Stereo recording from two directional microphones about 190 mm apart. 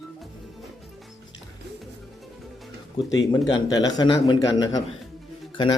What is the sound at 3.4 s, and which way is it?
A man's voice, 20° left (ahead or behind).